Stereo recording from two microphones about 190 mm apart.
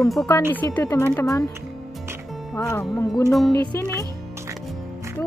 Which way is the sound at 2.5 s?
15° left (ahead or behind).